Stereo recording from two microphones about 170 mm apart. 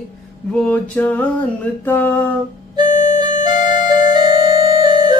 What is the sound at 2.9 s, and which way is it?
Music, 45° left (ahead or behind).